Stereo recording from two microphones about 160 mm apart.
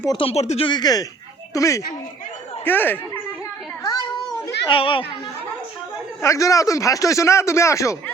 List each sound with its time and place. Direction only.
0.1 s speech: 35° left (ahead or behind); by 3.0 s 10° left (ahead or behind)
4.6 s speech: 30° left (ahead or behind)
6.2 s speech: 20° left (ahead or behind)